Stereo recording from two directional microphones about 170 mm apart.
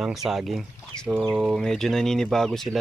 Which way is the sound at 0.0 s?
Centre (ahead or behind).